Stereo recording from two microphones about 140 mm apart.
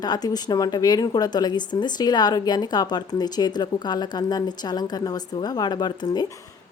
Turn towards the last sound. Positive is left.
turn(degrees=30)  # may be behind; listen again after turning